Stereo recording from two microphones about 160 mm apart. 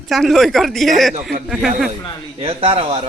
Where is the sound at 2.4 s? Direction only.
35° right (ahead or behind).